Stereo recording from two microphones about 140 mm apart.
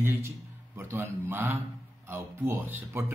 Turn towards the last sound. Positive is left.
turn(degrees=-15)  # may be behind; listen again after turning